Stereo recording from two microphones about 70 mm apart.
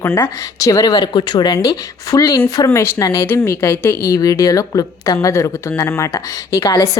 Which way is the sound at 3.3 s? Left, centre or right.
Left.